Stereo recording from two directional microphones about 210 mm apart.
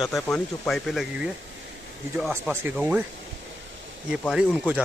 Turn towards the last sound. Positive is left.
turn(degrees=-5)  # may be behind; listen again after turning